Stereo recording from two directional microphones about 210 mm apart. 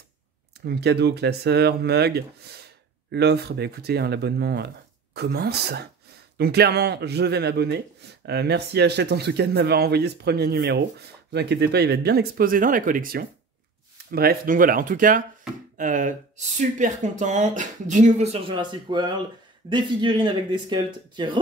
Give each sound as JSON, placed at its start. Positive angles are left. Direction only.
{"t": 0.6, "sound": "speech", "side_deg": -50}